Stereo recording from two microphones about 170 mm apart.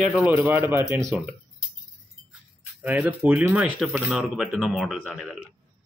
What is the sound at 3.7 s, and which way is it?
Speech, 5° left (ahead or behind).